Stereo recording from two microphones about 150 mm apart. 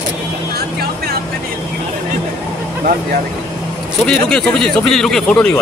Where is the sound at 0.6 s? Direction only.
90° right.